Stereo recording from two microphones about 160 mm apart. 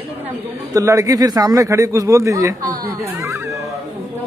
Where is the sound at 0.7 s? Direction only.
20° right (ahead or behind).